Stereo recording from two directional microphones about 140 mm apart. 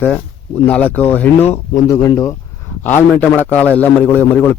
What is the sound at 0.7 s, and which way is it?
Speech, 10° left (ahead or behind).